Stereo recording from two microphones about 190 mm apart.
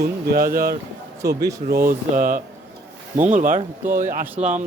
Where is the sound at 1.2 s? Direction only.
15° right (ahead or behind).